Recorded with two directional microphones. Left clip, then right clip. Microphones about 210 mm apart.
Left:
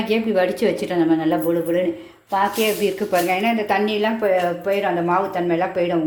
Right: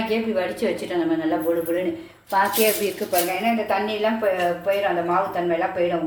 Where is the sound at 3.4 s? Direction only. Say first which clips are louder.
Left 2 dB; 50° left (ahead or behind).